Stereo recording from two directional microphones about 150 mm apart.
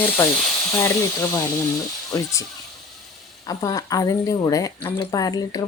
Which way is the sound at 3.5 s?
20° left (ahead or behind).